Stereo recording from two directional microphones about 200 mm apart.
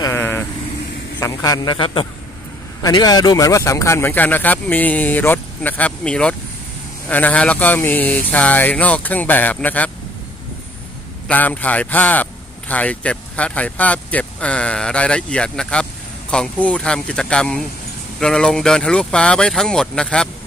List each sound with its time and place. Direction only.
0.0 s vehicle: 15° left (ahead or behind)
1.2 s a man's voice: 15° left (ahead or behind)
11.2 s a man's voice: 10° left (ahead or behind)